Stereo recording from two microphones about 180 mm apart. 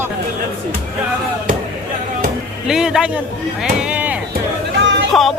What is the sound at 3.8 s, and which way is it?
Music, 5° right (ahead or behind).